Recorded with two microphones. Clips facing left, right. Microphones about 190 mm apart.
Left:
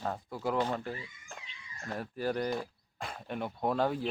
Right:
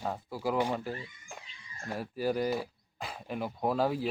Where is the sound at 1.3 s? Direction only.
10° right (ahead or behind).